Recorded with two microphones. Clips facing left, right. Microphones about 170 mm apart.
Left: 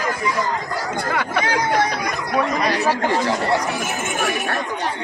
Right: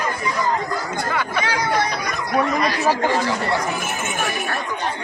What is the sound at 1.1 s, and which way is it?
Chatter, 55° left (ahead or behind).